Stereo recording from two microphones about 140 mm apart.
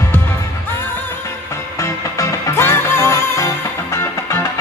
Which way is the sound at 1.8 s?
20° left (ahead or behind).